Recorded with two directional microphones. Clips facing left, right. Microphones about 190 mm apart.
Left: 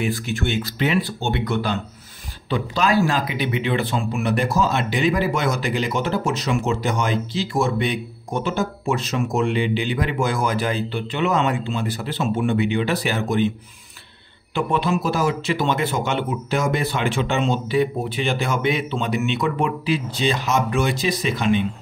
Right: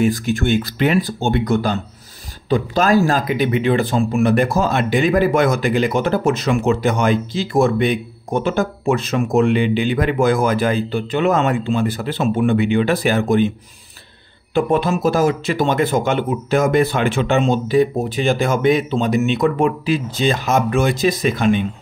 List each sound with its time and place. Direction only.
0.0 s speech: 45° right (ahead or behind)
14.5 s speech: 45° right (ahead or behind)